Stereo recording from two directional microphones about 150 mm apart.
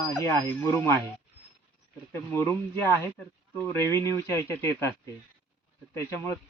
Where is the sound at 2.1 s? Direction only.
15° left (ahead or behind).